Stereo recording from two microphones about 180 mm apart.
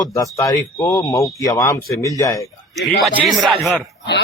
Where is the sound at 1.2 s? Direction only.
Centre (ahead or behind).